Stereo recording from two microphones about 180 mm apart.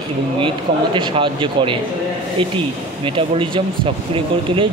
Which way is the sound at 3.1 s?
30° right (ahead or behind).